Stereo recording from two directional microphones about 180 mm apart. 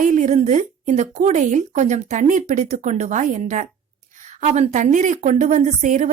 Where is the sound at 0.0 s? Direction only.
40° right (ahead or behind).